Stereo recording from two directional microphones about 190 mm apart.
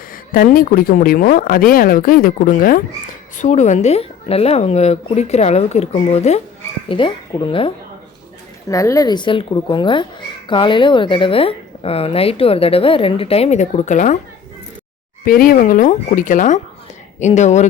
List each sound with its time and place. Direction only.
0.3 s speech: 50° left (ahead or behind); by 7.7 s 25° left (ahead or behind)
8.7 s speech: 15° left (ahead or behind); by 14.2 s 40° left (ahead or behind)
15.2 s speech: 50° left (ahead or behind)